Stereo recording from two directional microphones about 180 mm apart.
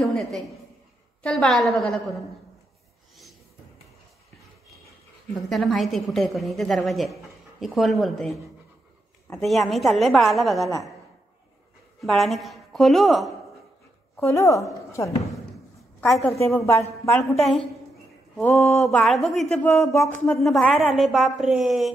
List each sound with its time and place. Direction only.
0.0 s a sound: centre (ahead or behind)
1.2 s a woman's voice: centre (ahead or behind)
5.3 s a woman's voice: centre (ahead or behind)
12.0 s a woman's voice: centre (ahead or behind)
14.1 s speech: 15° left (ahead or behind)
16.3 s speech: 15° left (ahead or behind)
17.4 s a woman's voice: 5° left (ahead or behind)
18.8 s a woman's voice: centre (ahead or behind)
19.5 s speech: 10° left (ahead or behind)
20.3 s a woman's voice: centre (ahead or behind)